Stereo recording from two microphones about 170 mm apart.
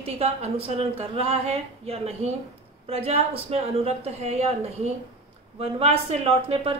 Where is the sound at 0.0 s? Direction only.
35° right (ahead or behind).